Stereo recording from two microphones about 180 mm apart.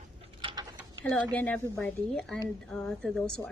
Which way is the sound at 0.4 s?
30° right (ahead or behind).